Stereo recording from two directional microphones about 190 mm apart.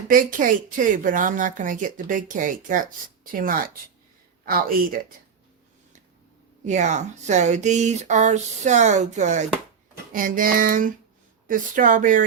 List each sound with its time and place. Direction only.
0.1 s speech: 45° right (ahead or behind)
6.7 s speech: 40° right (ahead or behind)